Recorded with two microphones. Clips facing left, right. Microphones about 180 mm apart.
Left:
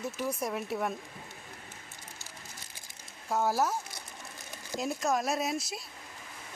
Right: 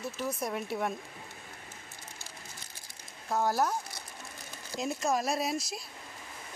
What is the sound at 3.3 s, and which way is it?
Speech, 5° left (ahead or behind).